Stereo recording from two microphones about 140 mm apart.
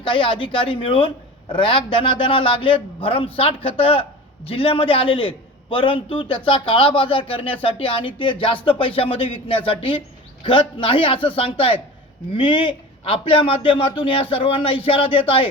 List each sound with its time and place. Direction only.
0.0 s a man's voice: 35° left (ahead or behind)